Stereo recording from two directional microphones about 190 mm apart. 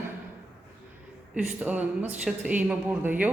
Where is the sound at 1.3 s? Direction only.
10° right (ahead or behind).